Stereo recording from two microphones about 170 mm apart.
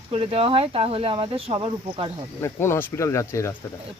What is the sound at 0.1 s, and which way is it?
Speech, 35° right (ahead or behind).